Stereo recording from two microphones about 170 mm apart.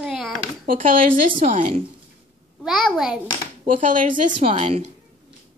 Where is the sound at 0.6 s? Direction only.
55° right (ahead or behind).